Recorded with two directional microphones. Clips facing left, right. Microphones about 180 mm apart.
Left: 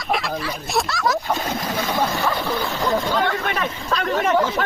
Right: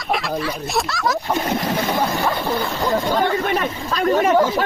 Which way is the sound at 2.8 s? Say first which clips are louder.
Right 2 dB; centre (ahead or behind).